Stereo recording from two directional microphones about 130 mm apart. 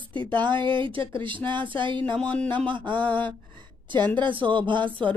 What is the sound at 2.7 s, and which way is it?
Speech, 40° right (ahead or behind).